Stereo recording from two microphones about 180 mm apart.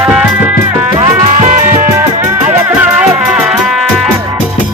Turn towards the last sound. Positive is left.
turn(degrees=-5)  # may be behind; listen again after turning